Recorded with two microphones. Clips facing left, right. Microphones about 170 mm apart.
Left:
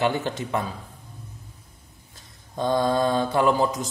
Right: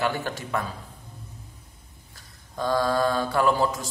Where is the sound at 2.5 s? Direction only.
20° left (ahead or behind).